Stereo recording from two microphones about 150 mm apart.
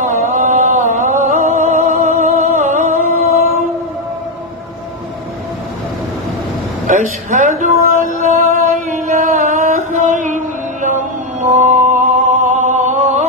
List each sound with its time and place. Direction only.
0.0 s chant: 55° right (ahead or behind)
6.9 s a sound: 55° right (ahead or behind)
11.4 s music: 55° right (ahead or behind)